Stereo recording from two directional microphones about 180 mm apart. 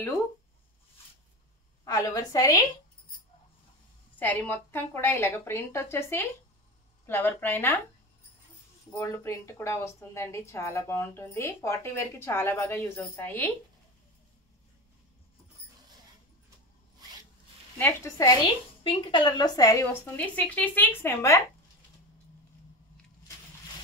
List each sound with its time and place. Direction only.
1.9 s a woman's voice: 20° left (ahead or behind)
4.2 s a woman's voice: 10° left (ahead or behind)
8.9 s a woman's voice: 15° left (ahead or behind)
17.7 s a woman's voice: 15° left (ahead or behind)
18.9 s a woman's voice: 25° left (ahead or behind)